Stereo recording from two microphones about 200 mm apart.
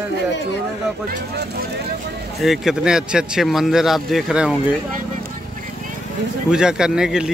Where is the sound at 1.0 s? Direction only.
50° right (ahead or behind).